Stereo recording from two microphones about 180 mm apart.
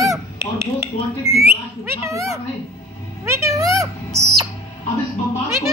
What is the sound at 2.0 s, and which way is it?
A child's voice, 15° right (ahead or behind).